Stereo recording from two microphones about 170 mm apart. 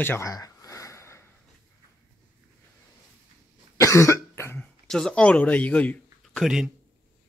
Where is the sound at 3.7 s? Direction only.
15° left (ahead or behind).